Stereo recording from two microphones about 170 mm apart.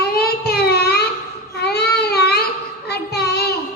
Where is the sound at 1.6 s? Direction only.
70° left (ahead or behind).